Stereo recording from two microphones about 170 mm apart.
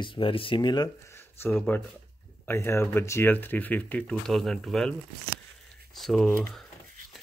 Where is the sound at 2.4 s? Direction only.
15° left (ahead or behind).